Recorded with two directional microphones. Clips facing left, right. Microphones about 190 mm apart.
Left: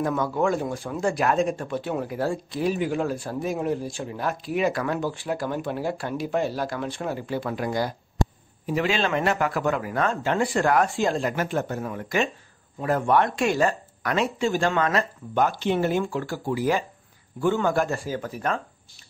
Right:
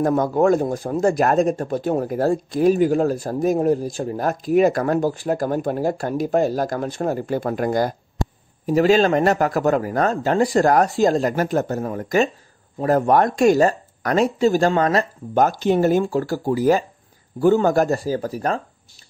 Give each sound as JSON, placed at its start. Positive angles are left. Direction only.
{"t": 0.0, "sound": "speech", "side_deg": -45}